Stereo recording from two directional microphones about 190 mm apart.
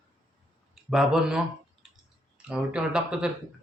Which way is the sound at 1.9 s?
5° right (ahead or behind).